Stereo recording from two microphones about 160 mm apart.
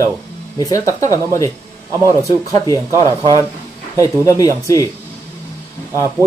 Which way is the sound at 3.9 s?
20° left (ahead or behind).